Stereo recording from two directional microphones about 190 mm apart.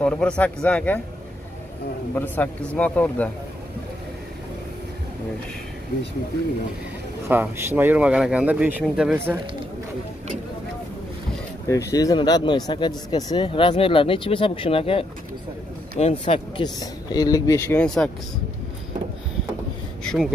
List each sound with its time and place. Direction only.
0.0 s speech: 5° left (ahead or behind)
2.1 s speech: 10° left (ahead or behind)
7.2 s speech: 10° right (ahead or behind)
11.7 s speech: 20° left (ahead or behind)
20.1 s speech: centre (ahead or behind)